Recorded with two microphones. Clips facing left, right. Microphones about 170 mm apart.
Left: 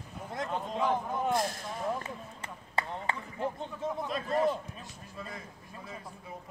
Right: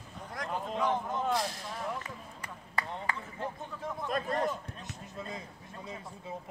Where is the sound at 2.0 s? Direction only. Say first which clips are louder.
Left 3 dB; 25° left (ahead or behind).